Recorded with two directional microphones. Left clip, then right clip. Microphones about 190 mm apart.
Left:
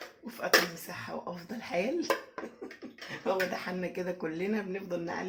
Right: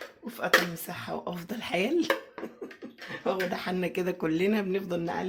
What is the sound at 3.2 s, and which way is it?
Speech, 60° right (ahead or behind).